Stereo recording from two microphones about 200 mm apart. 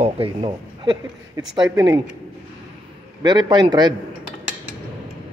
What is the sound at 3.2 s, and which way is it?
Speech, 20° right (ahead or behind).